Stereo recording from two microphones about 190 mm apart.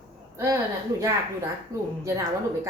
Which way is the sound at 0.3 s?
15° right (ahead or behind).